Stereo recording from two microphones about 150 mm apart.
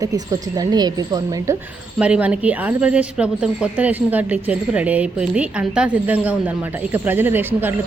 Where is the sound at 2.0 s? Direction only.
10° right (ahead or behind).